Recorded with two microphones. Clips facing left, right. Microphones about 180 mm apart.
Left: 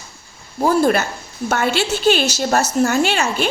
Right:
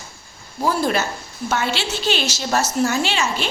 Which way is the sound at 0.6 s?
50° left (ahead or behind).